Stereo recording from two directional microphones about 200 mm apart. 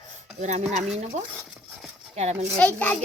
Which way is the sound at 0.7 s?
35° right (ahead or behind).